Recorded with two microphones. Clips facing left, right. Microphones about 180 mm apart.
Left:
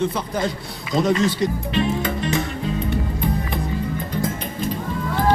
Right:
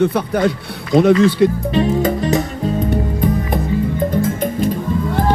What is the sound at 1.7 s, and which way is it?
Music, 40° right (ahead or behind).